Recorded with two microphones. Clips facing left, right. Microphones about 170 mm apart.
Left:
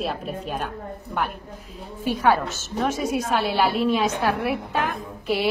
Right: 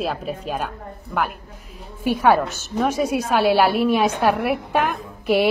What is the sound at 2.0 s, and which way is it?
A woman's voice, 15° right (ahead or behind).